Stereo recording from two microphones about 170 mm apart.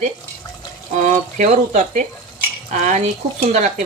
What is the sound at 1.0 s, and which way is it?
Speech, 45° right (ahead or behind).